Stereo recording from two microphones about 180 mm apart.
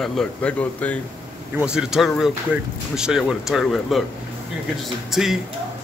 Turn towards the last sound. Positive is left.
turn(degrees=0)  # may be behind; listen again after turning